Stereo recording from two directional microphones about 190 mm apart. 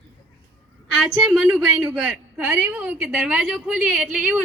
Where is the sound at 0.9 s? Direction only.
Centre (ahead or behind).